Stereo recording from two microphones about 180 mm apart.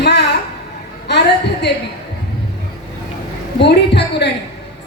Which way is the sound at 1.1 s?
70° left (ahead or behind).